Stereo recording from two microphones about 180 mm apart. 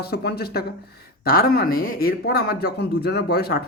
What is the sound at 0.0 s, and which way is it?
Speech, 60° left (ahead or behind).